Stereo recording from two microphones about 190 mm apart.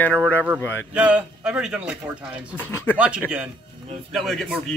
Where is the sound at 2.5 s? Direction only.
10° left (ahead or behind).